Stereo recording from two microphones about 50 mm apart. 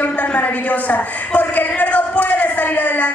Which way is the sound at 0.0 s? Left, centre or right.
Left.